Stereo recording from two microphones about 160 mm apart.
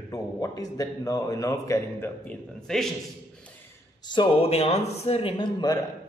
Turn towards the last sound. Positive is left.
turn(degrees=30)  # may be behind; listen again after turning